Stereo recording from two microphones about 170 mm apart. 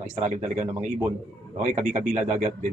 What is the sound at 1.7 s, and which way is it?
Speech, 45° right (ahead or behind).